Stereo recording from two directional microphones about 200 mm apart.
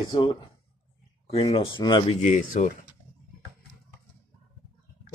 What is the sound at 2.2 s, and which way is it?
Speech, 40° left (ahead or behind).